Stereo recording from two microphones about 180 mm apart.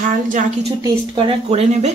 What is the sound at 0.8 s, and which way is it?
Speech, 30° right (ahead or behind).